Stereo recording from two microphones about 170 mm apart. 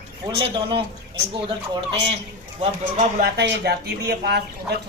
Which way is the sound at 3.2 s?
70° right (ahead or behind).